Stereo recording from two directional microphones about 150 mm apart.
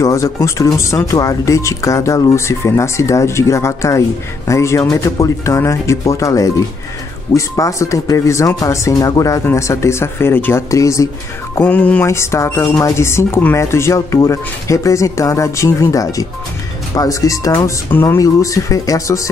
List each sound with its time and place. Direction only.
0.0 s speech: 20° left (ahead or behind)
11.5 s speech: 10° left (ahead or behind)